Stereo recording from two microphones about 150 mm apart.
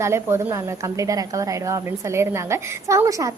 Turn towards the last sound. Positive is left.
turn(degrees=-20)  # may be behind; listen again after turning